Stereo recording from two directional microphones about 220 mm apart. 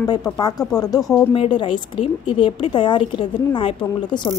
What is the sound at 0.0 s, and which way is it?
A woman's voice, 15° left (ahead or behind).